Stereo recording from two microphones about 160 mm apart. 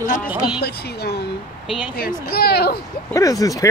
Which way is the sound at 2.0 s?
70° left (ahead or behind).